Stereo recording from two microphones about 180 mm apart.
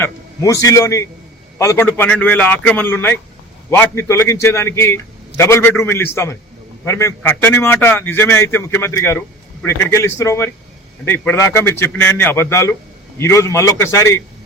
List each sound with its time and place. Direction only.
0.0 s a man's voice: 15° left (ahead or behind)